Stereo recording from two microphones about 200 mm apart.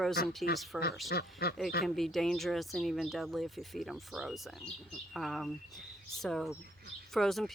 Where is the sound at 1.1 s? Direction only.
50° left (ahead or behind).